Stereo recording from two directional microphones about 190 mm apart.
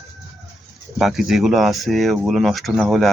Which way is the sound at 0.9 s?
Centre (ahead or behind).